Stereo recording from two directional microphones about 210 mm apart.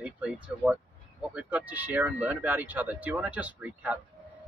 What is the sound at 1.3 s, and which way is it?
Speech, 5° right (ahead or behind).